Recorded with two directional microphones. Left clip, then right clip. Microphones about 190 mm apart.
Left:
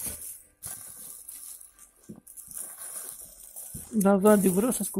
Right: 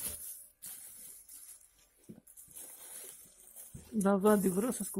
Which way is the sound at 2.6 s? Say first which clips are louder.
Left 9 dB; 15° left (ahead or behind).